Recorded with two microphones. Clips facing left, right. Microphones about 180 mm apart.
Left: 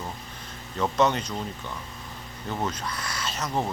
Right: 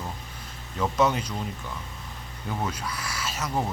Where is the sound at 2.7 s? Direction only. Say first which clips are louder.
Left 1 dB; 10° right (ahead or behind).